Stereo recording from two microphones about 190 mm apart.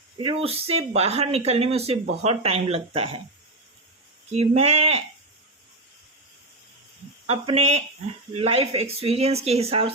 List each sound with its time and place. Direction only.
0.2 s speech: 30° right (ahead or behind)
4.3 s speech: 35° right (ahead or behind)
7.3 s speech: 30° right (ahead or behind)